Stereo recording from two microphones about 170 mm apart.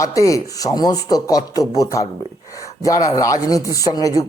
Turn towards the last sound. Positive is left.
turn(degrees=20)  # may be behind; listen again after turning